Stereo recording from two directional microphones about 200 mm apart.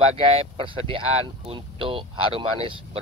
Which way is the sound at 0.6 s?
25° right (ahead or behind).